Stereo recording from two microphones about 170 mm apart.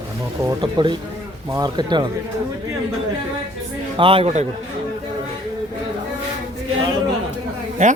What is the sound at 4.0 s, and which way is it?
Speech, 30° right (ahead or behind).